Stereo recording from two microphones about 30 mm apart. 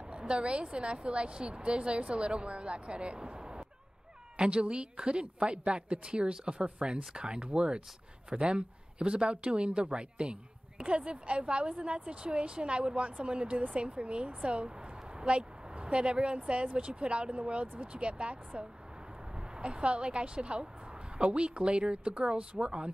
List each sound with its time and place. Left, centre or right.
0.2 s a woman's voice: right
19.3 s a woman's voice: right